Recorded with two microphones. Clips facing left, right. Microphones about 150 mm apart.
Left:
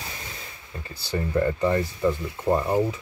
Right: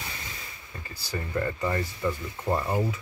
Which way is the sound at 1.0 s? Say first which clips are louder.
Left 6 dB; 25° left (ahead or behind).